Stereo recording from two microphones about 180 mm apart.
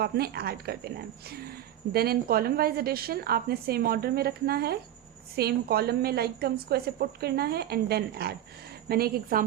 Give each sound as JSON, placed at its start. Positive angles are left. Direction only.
{"t": 0.0, "sound": "speech", "side_deg": -60}